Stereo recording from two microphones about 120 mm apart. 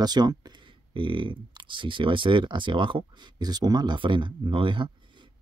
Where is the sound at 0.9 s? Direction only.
45° right (ahead or behind).